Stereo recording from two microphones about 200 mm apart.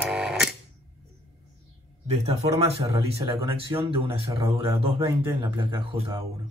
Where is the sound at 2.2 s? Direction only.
30° right (ahead or behind).